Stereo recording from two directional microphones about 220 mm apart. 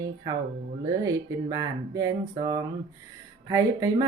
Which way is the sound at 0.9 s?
15° right (ahead or behind).